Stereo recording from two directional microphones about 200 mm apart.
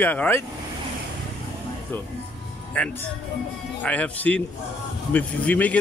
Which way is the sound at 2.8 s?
5° left (ahead or behind).